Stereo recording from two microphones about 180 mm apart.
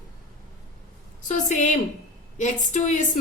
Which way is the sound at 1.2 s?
40° left (ahead or behind).